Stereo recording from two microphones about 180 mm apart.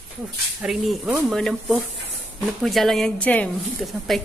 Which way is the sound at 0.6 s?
Centre (ahead or behind).